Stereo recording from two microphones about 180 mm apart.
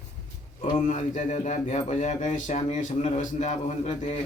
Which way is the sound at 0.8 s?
40° left (ahead or behind).